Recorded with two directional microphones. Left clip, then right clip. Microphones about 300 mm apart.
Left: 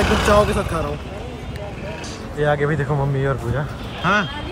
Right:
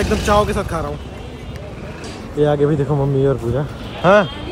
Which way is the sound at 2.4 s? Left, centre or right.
Centre.